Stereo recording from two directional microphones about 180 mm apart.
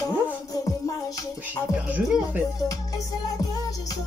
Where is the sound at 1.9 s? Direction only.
10° right (ahead or behind).